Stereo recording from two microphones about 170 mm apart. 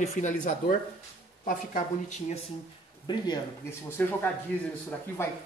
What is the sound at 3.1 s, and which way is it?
Speech, 25° left (ahead or behind).